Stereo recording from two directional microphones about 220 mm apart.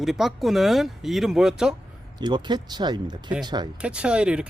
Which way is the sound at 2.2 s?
20° right (ahead or behind).